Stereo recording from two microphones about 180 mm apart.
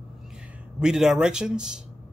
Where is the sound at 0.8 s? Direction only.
5° right (ahead or behind).